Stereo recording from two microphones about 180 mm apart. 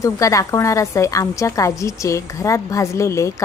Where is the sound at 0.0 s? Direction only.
15° left (ahead or behind).